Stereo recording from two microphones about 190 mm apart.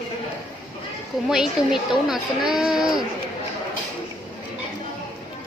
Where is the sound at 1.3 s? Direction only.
Centre (ahead or behind).